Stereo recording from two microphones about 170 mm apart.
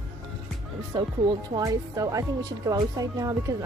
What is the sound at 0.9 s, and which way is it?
Speech, 25° right (ahead or behind).